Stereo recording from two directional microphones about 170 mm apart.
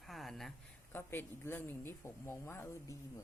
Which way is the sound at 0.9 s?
10° left (ahead or behind).